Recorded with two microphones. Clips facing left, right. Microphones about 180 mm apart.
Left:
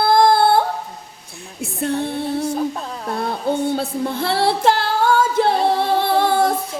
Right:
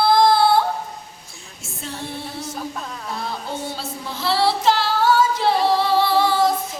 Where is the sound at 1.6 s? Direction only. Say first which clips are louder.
Left 11 dB; 60° left (ahead or behind).